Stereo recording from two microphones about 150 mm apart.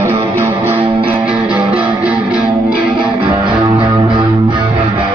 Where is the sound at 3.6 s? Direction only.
30° right (ahead or behind).